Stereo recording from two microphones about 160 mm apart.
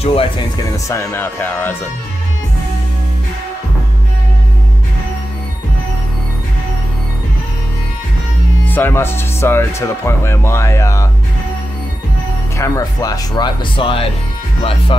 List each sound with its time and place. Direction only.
0.0 s speech: 35° left (ahead or behind)
0.7 s speech: 20° left (ahead or behind)
8.6 s speech: 10° left (ahead or behind)
12.5 s speech: 20° left (ahead or behind); by 15.0 s 35° left (ahead or behind)